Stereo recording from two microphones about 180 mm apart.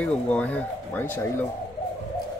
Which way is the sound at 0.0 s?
10° left (ahead or behind).